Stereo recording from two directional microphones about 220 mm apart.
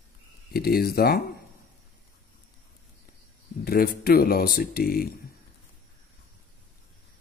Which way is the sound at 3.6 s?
45° left (ahead or behind).